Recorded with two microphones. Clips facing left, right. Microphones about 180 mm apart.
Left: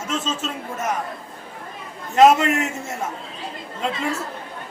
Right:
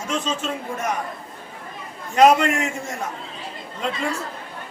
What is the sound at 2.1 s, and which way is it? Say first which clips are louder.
Speech: left 1 dB; centre (ahead or behind).